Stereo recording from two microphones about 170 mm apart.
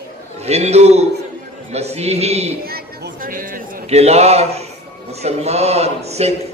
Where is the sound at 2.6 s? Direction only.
65° right (ahead or behind).